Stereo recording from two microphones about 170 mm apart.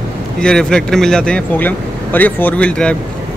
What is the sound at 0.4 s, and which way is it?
Speech, 5° left (ahead or behind).